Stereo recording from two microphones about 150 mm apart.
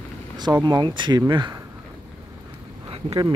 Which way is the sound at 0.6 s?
30° right (ahead or behind).